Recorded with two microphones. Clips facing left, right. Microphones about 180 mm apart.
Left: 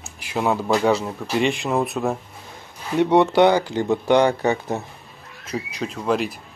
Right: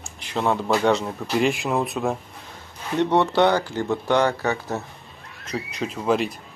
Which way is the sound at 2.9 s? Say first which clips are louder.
Left 3 dB; 10° left (ahead or behind).